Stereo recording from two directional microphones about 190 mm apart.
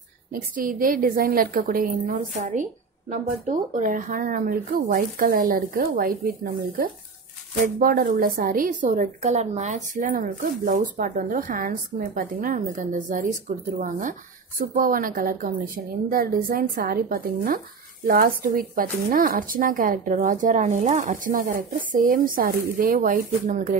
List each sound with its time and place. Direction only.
0.3 s speech: 45° right (ahead or behind)